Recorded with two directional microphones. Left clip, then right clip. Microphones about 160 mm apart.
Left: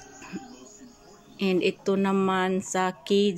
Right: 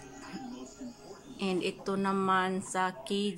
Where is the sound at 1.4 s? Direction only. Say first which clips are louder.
Left 8 dB; 20° left (ahead or behind).